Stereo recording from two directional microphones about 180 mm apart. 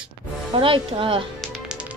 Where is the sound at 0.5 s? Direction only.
30° right (ahead or behind).